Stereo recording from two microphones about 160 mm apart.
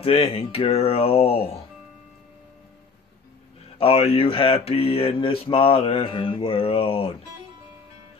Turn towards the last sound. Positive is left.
turn(degrees=35)  # may be behind; listen again after turning